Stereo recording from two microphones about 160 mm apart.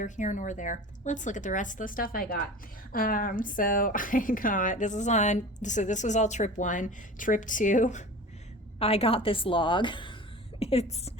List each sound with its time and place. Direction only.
0.0 s a woman's voice: 50° left (ahead or behind)
8.8 s a woman's voice: 40° left (ahead or behind)